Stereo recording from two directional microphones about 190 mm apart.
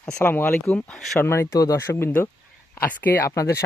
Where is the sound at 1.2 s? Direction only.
15° left (ahead or behind).